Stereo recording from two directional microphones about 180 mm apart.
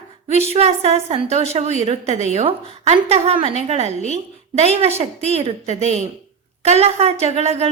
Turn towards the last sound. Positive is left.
turn(degrees=-35)  # may be behind; listen again after turning